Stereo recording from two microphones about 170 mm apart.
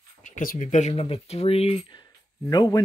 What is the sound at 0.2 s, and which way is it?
Speech, 50° left (ahead or behind).